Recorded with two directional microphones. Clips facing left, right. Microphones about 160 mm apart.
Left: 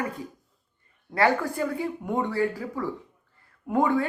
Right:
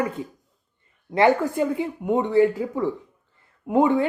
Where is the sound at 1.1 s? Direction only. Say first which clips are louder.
Right 5 dB; 20° right (ahead or behind).